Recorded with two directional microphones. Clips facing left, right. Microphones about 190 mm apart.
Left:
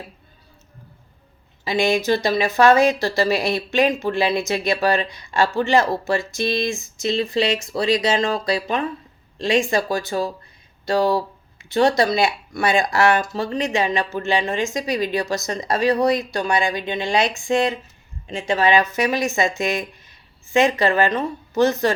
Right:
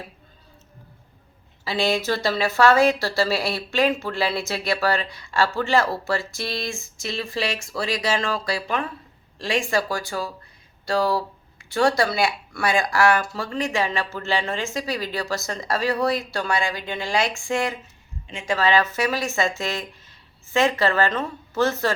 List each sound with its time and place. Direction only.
1.6 s speech: 15° left (ahead or behind)